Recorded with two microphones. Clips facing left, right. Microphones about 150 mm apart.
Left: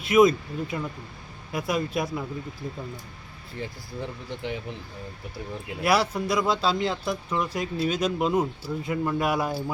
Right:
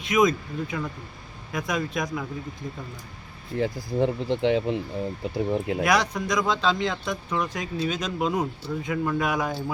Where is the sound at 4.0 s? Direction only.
90° right.